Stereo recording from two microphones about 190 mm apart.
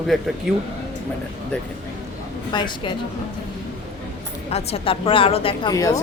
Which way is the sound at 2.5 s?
25° left (ahead or behind).